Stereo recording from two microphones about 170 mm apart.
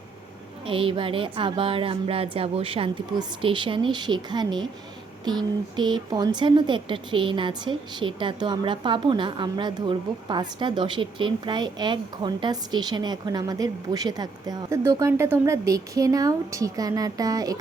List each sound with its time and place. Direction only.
0.6 s a woman's voice: 30° right (ahead or behind)